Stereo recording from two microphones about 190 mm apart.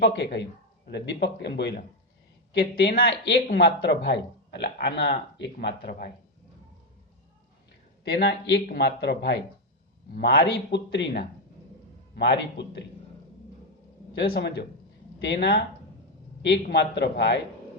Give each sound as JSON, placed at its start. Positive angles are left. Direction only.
{"t": 0.0, "sound": "speech", "side_deg": 60}
{"t": 8.0, "sound": "speech", "side_deg": 60}
{"t": 12.1, "sound": "speech", "side_deg": 65}
{"t": 14.3, "sound": "speech", "side_deg": 60}